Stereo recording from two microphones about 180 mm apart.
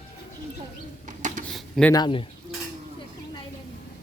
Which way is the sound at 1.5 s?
Centre (ahead or behind).